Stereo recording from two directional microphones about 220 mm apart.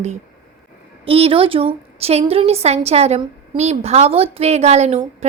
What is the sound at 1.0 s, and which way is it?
A woman's voice, 25° right (ahead or behind).